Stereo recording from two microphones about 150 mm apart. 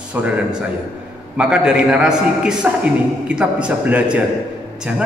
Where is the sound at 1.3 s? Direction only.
5° right (ahead or behind).